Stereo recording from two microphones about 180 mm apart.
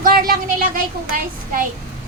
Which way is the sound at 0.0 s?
55° right (ahead or behind).